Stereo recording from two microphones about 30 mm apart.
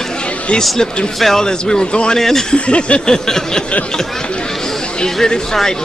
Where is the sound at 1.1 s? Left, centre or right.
Centre.